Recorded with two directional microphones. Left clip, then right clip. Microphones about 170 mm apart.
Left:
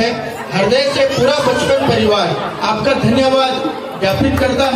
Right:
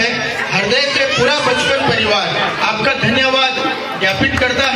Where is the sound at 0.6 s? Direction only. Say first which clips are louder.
Left 3 dB; 25° left (ahead or behind).